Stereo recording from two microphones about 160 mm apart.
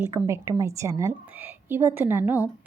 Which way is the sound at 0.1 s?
15° right (ahead or behind).